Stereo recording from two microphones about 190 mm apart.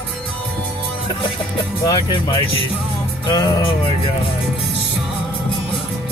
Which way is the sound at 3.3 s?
20° left (ahead or behind).